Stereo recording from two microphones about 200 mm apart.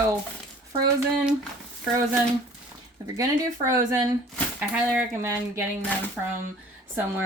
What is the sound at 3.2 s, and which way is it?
Speech, 15° right (ahead or behind).